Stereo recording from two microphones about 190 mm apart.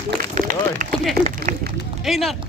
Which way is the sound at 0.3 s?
45° right (ahead or behind).